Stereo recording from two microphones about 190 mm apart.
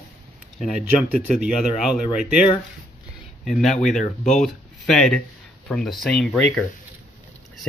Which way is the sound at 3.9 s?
40° left (ahead or behind).